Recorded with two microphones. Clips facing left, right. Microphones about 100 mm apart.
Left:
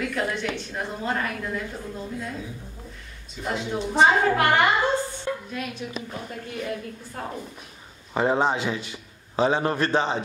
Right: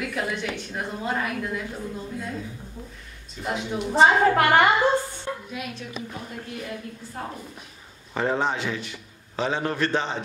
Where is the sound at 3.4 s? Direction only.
5° right (ahead or behind).